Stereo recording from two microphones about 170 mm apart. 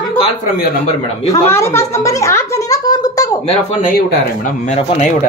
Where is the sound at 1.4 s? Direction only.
15° left (ahead or behind).